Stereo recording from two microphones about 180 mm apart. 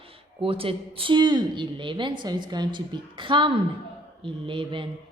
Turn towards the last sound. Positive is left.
turn(degrees=-30)  # may be behind; listen again after turning